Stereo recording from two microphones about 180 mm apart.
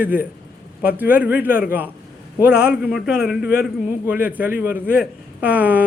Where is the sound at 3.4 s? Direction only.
55° left (ahead or behind).